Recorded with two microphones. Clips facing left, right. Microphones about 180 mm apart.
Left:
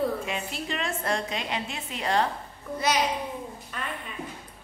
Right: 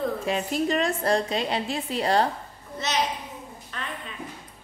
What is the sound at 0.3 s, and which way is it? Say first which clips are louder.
A woman's voice: right 8 dB; 40° right (ahead or behind).